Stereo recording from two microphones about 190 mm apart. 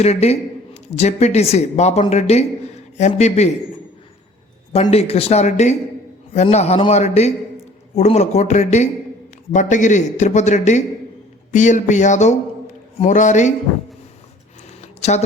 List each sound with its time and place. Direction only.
0.0 s a woman's voice: 35° left (ahead or behind)
4.7 s a woman's voice: 30° left (ahead or behind)
14.8 s a sound: 35° left (ahead or behind)